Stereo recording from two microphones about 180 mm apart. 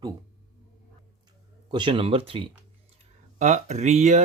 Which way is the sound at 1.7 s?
25° right (ahead or behind).